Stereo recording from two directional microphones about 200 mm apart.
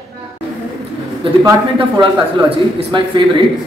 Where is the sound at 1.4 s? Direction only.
25° right (ahead or behind).